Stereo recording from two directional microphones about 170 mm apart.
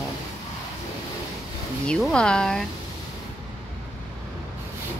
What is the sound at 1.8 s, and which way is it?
Speech, 5° left (ahead or behind).